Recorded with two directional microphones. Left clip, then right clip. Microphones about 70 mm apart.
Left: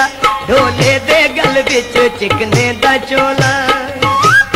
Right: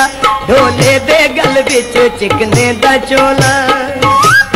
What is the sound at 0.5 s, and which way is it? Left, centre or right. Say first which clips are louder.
Music: right 3 dB; right.